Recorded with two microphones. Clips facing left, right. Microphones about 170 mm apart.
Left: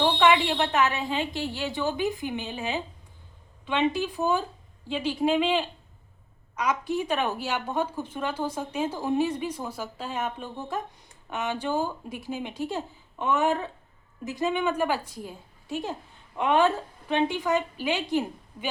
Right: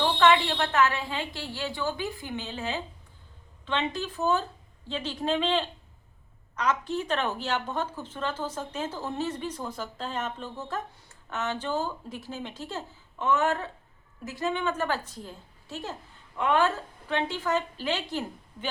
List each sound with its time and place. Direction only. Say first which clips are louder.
0.0 s a woman's voice: left 1 dB; 15° left (ahead or behind)